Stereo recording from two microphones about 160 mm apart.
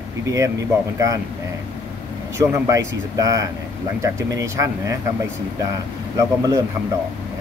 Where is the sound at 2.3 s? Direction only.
20° right (ahead or behind).